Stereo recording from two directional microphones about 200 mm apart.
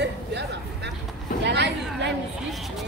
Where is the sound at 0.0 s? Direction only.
60° right (ahead or behind).